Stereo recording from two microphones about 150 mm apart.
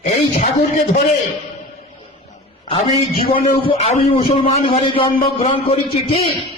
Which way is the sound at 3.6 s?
40° left (ahead or behind).